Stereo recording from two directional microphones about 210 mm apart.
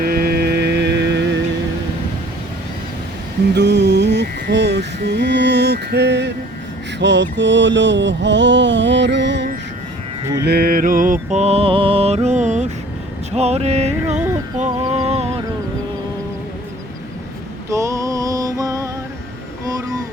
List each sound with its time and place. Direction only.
0.0 s a sound: 45° right (ahead or behind)
3.5 s music: 55° right (ahead or behind)
7.0 s mantra: 55° right (ahead or behind)
10.4 s music: 50° right (ahead or behind)
13.3 s a sound: 30° right (ahead or behind)
14.0 s music: 10° right (ahead or behind)
14.6 s music: 30° right (ahead or behind)
17.7 s music: 15° right (ahead or behind)